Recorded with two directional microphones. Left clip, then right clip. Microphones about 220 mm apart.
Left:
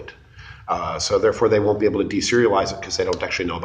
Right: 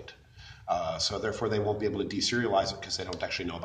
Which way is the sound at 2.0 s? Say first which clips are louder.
Left 11 dB; 50° right (ahead or behind).